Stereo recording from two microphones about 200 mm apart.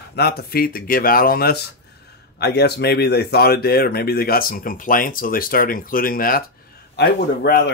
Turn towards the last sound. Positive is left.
turn(degrees=55)  # may be behind; listen again after turning